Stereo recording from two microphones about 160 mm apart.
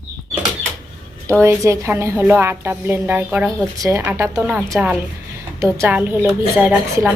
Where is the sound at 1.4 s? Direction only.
20° right (ahead or behind).